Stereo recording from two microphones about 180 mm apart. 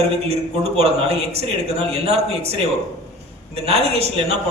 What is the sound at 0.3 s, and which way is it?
A man's voice, 35° right (ahead or behind).